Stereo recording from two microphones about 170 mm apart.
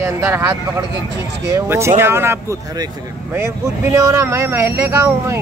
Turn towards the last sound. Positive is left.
turn(degrees=-15)  # may be behind; listen again after turning